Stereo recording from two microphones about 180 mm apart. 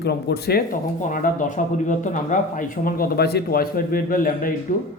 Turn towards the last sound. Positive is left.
turn(degrees=45)  # may be behind; listen again after turning